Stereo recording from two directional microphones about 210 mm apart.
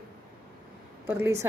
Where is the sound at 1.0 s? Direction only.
10° right (ahead or behind).